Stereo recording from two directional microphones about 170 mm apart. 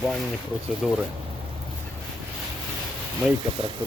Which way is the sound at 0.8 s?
Centre (ahead or behind).